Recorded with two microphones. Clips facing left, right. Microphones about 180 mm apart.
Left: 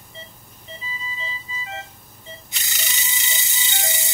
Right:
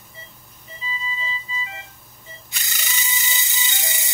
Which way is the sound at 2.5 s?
20° left (ahead or behind).